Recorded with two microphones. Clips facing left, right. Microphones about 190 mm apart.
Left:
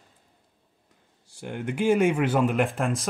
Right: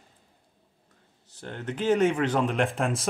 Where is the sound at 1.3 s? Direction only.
10° left (ahead or behind).